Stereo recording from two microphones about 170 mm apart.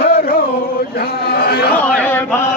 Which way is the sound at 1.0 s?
65° left (ahead or behind).